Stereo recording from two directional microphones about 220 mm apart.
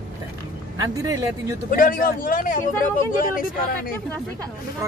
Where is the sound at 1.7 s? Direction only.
40° left (ahead or behind).